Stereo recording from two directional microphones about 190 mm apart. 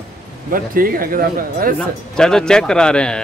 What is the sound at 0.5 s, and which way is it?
Speech, 50° right (ahead or behind).